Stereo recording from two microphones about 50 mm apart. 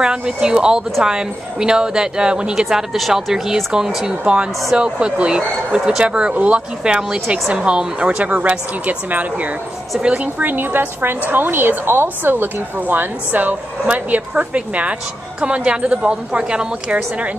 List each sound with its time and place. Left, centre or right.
0.0 s a woman's voice: centre
8.3 s a woman's voice: right
10.4 s a woman's voice: right